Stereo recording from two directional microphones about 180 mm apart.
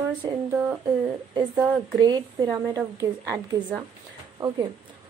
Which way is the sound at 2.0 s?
25° right (ahead or behind).